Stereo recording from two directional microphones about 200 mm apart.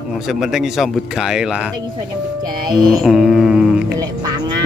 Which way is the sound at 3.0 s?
Centre (ahead or behind).